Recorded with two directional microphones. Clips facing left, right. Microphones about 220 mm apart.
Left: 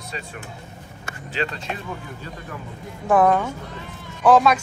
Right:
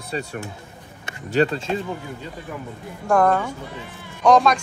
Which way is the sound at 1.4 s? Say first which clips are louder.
Right 8 dB; 45° right (ahead or behind).